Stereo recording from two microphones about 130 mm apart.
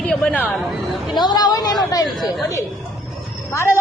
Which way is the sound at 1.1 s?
35° left (ahead or behind).